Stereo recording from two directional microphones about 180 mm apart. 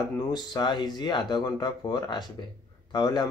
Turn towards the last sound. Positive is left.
turn(degrees=20)  # may be behind; listen again after turning